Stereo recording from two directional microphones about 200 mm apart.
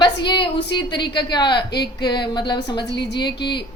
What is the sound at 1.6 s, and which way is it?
Speech, 55° left (ahead or behind).